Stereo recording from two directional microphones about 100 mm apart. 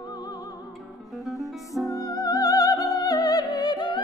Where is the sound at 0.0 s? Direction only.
40° left (ahead or behind).